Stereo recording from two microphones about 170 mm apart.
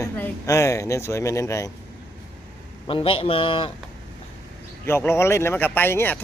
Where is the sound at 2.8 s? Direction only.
30° left (ahead or behind).